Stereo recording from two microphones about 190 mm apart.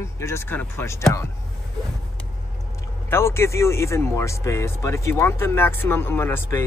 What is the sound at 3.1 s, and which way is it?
Speech, 15° left (ahead or behind).